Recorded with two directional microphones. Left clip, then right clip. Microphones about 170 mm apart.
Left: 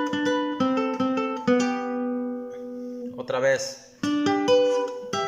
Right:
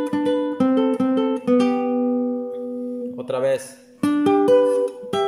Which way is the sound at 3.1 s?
20° right (ahead or behind).